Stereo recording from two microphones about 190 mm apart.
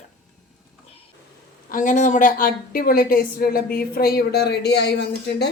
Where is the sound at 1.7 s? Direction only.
45° left (ahead or behind).